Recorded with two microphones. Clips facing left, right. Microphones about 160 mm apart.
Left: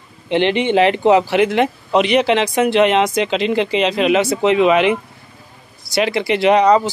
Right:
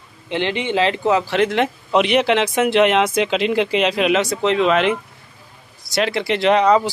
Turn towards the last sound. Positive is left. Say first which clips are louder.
# left 2 dB
turn(degrees=0)  # may be behind; listen again after turning